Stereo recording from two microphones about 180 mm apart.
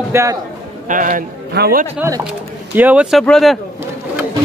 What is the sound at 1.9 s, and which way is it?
Speech, 15° right (ahead or behind).